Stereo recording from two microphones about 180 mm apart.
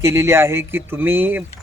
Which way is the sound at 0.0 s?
15° right (ahead or behind).